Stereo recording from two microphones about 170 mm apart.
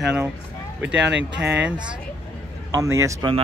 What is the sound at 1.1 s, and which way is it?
Speech, 90° right.